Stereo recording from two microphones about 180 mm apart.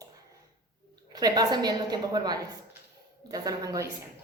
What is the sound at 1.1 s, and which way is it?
A woman's voice, 20° right (ahead or behind).